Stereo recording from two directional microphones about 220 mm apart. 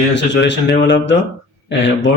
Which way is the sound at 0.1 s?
55° left (ahead or behind).